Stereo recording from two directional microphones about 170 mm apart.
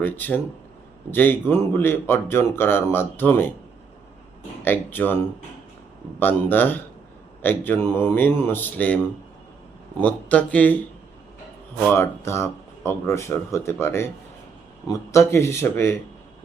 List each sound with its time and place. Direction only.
0.0 s speech: 10° left (ahead or behind)
4.6 s speech: 10° left (ahead or behind)
10.0 s speech: 10° left (ahead or behind)
11.8 s speech: 15° left (ahead or behind)